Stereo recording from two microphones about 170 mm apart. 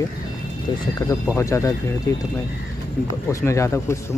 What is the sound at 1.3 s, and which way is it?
Speech, 15° left (ahead or behind).